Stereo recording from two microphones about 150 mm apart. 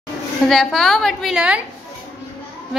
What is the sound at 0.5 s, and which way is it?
A woman's voice, 5° left (ahead or behind).